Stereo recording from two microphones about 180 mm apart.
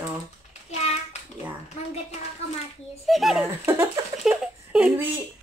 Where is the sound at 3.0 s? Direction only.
Centre (ahead or behind).